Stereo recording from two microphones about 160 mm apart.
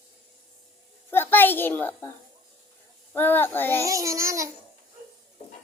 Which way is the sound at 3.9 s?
20° right (ahead or behind).